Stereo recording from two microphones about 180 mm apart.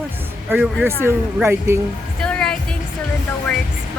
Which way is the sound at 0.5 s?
5° right (ahead or behind).